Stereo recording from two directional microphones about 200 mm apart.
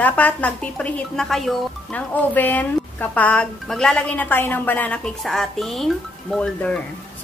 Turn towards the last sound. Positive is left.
turn(degrees=5)  # may be behind; listen again after turning